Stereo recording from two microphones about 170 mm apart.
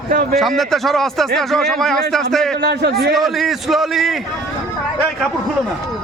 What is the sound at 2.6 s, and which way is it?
Speech, 80° right.